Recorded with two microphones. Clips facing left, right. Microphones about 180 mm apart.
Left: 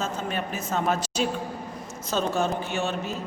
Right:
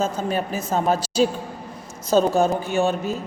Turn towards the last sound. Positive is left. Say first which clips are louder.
# right 7 dB
turn(degrees=-40)  # may be behind; listen again after turning